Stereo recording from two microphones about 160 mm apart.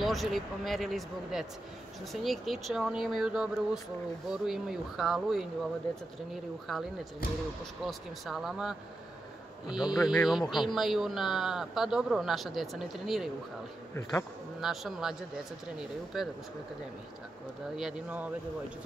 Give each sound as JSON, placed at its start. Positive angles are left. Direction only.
{"t": 0.0, "sound": "speech", "side_deg": 0}
{"t": 6.7, "sound": "speech", "side_deg": 0}
{"t": 9.7, "sound": "speech", "side_deg": 25}
{"t": 10.0, "sound": "speech", "side_deg": 0}
{"t": 14.6, "sound": "speech", "side_deg": 0}
{"t": 16.1, "sound": "speech", "side_deg": 0}
{"t": 17.7, "sound": "speech", "side_deg": -5}